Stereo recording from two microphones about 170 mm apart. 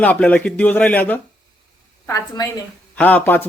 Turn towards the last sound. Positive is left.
turn(degrees=10)  # may be behind; listen again after turning